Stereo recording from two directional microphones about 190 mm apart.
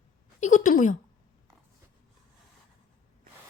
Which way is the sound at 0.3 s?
40° left (ahead or behind).